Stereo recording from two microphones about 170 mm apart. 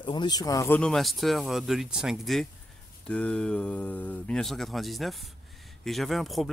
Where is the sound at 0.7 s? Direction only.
5° left (ahead or behind).